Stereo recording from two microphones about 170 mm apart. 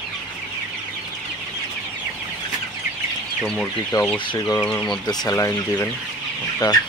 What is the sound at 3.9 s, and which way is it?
Speech, 15° left (ahead or behind).